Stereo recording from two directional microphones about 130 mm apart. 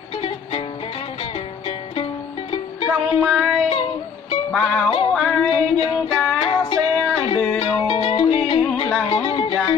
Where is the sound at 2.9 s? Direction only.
5° right (ahead or behind).